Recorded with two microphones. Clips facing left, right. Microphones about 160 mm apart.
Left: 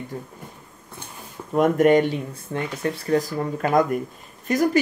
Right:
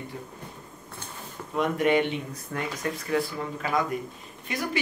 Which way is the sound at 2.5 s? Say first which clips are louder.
Left 5 dB; 30° left (ahead or behind).